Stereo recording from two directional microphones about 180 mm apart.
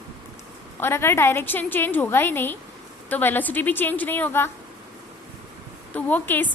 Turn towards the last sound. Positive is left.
turn(degrees=10)  # may be behind; listen again after turning